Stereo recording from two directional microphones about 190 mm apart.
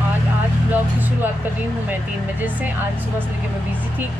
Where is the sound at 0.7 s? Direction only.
10° right (ahead or behind).